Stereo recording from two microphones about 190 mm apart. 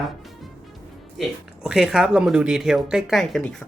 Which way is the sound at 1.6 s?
5° right (ahead or behind).